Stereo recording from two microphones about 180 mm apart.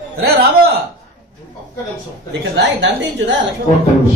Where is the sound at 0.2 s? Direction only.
60° right (ahead or behind).